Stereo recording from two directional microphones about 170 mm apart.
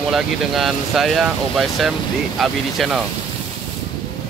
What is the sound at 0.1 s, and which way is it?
Speech, centre (ahead or behind).